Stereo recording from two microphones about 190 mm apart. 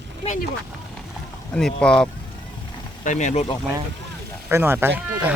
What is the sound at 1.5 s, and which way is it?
Speech, 5° left (ahead or behind).